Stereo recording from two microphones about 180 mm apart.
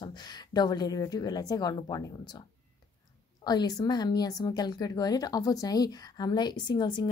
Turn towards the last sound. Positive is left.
turn(degrees=25)  # may be behind; listen again after turning